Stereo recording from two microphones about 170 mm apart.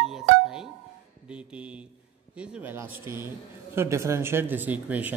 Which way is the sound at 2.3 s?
15° right (ahead or behind).